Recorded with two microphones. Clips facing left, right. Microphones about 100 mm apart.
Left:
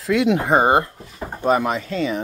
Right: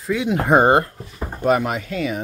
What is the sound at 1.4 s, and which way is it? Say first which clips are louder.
Speech: even; 30° left (ahead or behind).